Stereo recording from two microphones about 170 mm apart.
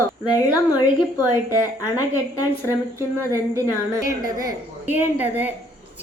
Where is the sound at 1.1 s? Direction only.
20° left (ahead or behind).